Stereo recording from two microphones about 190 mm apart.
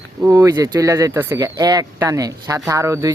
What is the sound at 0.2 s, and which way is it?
Speech, 15° right (ahead or behind).